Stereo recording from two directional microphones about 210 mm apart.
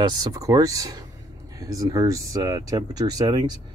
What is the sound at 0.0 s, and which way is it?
Speech, 20° right (ahead or behind).